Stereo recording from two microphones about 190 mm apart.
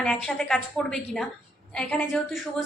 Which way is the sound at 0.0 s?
5° left (ahead or behind).